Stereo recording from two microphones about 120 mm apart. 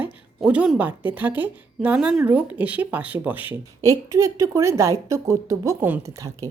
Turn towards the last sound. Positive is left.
turn(degrees=-25)  # may be behind; listen again after turning